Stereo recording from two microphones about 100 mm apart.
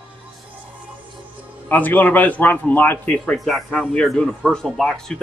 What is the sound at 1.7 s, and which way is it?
Speech, 20° left (ahead or behind).